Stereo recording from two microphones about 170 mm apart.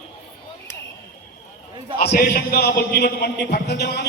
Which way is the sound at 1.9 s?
65° left (ahead or behind).